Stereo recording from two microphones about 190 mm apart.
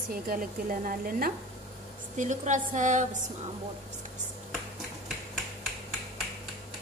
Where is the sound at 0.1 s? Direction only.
50° right (ahead or behind).